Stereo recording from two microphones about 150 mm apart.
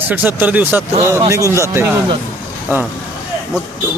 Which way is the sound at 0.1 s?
10° right (ahead or behind).